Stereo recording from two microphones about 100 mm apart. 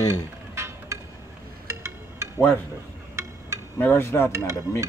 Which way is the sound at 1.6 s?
25° right (ahead or behind).